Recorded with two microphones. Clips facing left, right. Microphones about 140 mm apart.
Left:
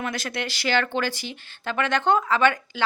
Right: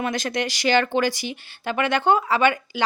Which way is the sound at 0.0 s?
20° right (ahead or behind).